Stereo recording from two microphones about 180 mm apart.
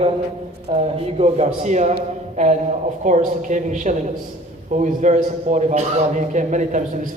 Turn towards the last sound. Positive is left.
turn(degrees=-45)  # may be behind; listen again after turning